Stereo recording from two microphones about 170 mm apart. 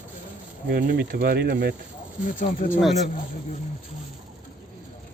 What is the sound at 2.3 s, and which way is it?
Speech, 55° left (ahead or behind).